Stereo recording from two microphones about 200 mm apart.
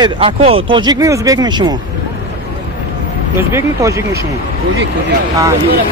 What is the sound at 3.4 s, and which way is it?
Speech, 15° right (ahead or behind).